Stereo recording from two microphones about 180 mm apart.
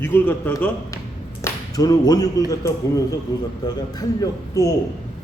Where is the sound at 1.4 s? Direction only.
20° left (ahead or behind).